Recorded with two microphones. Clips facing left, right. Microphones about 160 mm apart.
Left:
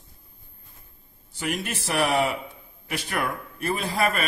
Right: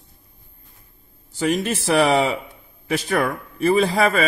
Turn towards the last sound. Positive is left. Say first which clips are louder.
# right 8 dB
turn(degrees=-90)